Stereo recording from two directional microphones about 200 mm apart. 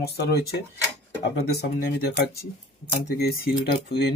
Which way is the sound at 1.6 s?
50° left (ahead or behind).